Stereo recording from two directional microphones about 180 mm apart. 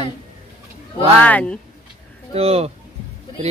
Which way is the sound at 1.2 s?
10° left (ahead or behind).